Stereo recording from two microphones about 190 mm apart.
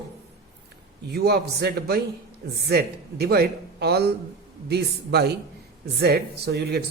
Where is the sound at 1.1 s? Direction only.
55° right (ahead or behind).